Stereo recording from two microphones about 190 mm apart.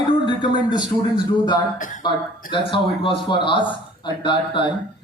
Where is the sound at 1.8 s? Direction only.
45° left (ahead or behind).